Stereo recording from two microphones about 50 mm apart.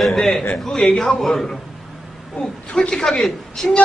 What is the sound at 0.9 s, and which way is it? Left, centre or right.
Speech, left.